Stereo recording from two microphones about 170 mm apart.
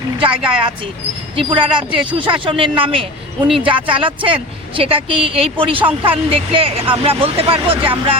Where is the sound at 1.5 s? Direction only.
30° right (ahead or behind).